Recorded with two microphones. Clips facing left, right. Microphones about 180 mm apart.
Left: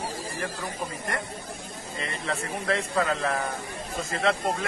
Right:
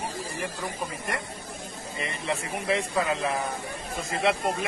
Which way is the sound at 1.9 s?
15° right (ahead or behind).